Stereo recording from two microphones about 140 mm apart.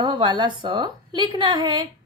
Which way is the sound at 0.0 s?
30° right (ahead or behind).